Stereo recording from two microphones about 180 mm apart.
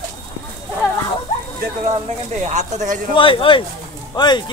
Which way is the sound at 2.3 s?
40° right (ahead or behind).